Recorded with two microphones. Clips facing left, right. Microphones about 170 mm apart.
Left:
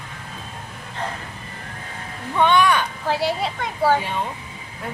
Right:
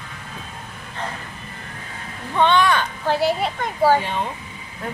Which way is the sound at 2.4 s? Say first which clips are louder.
Even; 10° left (ahead or behind).